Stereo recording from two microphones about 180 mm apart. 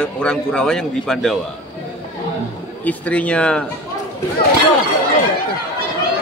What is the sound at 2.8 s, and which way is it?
Speech, 10° left (ahead or behind).